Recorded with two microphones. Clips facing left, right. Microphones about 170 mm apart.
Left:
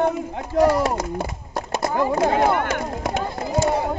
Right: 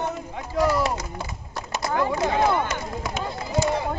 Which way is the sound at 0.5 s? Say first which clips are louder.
Left 5 dB; 45° left (ahead or behind).